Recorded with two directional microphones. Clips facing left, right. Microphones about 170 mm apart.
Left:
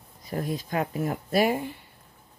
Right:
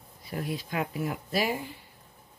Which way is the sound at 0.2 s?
40° left (ahead or behind).